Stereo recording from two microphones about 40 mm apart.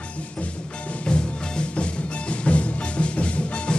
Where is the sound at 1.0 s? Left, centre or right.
Left.